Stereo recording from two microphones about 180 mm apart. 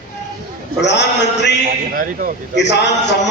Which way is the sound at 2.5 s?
75° left (ahead or behind).